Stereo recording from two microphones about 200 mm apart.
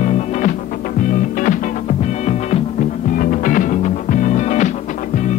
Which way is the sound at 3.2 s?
45° left (ahead or behind).